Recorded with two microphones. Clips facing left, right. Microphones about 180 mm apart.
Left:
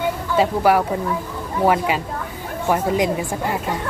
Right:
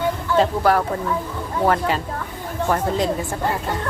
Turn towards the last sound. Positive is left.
turn(degrees=10)  # may be behind; listen again after turning